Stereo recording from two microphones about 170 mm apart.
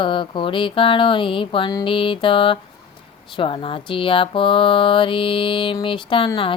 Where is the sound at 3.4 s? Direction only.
30° left (ahead or behind).